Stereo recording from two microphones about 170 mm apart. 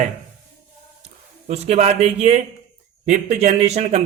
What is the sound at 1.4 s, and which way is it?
A man's voice, 40° right (ahead or behind).